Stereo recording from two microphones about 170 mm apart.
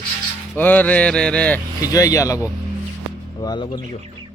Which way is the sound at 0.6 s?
10° left (ahead or behind).